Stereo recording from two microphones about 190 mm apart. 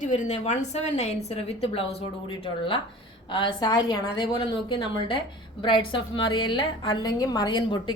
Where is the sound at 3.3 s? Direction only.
25° left (ahead or behind).